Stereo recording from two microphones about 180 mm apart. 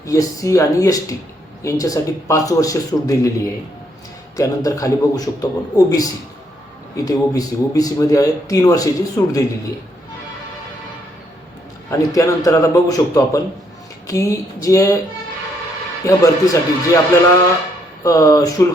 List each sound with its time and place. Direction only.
0.0 s a man's voice: 20° left (ahead or behind)
4.4 s speech: 20° left (ahead or behind)
11.9 s a man's voice: 15° left (ahead or behind)
16.0 s a man's voice: 20° left (ahead or behind)
18.0 s speech: 20° left (ahead or behind)